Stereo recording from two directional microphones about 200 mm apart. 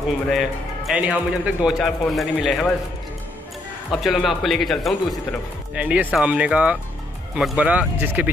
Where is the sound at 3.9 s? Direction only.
Centre (ahead or behind).